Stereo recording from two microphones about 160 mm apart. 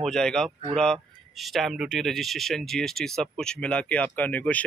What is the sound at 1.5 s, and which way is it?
Speech, centre (ahead or behind).